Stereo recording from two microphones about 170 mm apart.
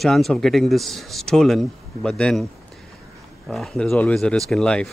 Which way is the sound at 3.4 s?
Centre (ahead or behind).